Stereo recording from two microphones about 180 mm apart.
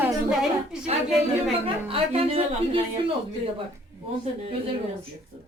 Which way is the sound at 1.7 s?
30° right (ahead or behind).